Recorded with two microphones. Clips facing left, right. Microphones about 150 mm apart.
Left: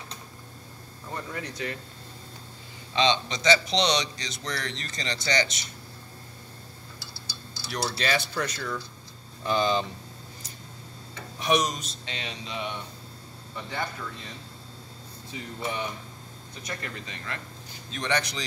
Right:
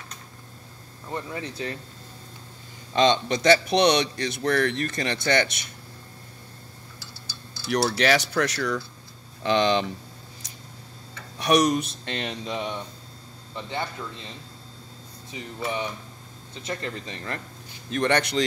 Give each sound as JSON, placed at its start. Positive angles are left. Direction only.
{"t": 1.1, "sound": "speech", "side_deg": -30}
{"t": 2.9, "sound": "a man's voice", "side_deg": -50}
{"t": 7.0, "sound": "a sound", "side_deg": 15}
{"t": 7.7, "sound": "speech", "side_deg": -75}
{"t": 11.3, "sound": "a man's voice", "side_deg": -70}
{"t": 15.3, "sound": "speech", "side_deg": -20}
{"t": 16.6, "sound": "speech", "side_deg": -30}
{"t": 17.8, "sound": "a man's voice", "side_deg": -55}